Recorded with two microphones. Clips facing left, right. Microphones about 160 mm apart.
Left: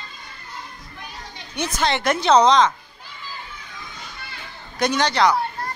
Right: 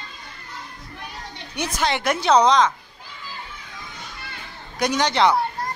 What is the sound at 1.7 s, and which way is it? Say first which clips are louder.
Speech: left 1 dB; 10° right (ahead or behind).